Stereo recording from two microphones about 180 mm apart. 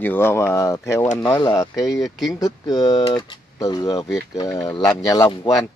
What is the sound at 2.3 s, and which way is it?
Speech, 20° left (ahead or behind).